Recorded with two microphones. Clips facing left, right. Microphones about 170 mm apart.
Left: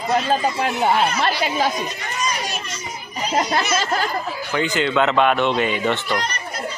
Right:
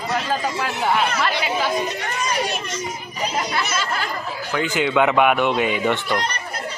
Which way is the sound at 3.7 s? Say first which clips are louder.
Left 4 dB; 40° left (ahead or behind).